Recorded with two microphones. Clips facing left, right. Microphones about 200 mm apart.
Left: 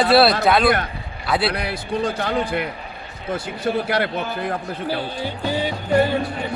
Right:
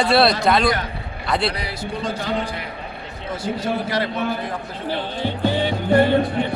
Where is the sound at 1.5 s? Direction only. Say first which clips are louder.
Left 2 dB; 60° left (ahead or behind).